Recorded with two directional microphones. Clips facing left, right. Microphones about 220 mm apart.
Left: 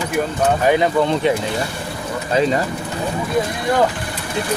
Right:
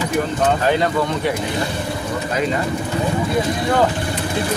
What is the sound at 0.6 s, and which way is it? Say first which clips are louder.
Speech: left 2 dB; 15° left (ahead or behind).